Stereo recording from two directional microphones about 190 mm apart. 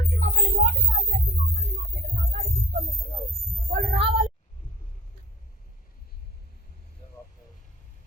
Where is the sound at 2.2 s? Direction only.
35° right (ahead or behind).